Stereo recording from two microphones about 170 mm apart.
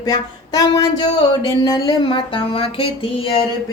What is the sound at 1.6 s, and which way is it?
Music, 25° left (ahead or behind).